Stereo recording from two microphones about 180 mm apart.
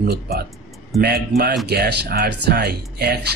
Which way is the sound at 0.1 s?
60° right (ahead or behind).